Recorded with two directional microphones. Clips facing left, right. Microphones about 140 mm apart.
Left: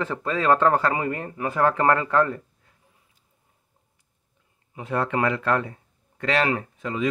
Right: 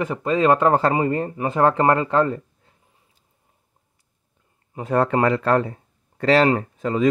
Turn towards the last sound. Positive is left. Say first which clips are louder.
# right 6 dB
turn(degrees=-40)  # may be behind; listen again after turning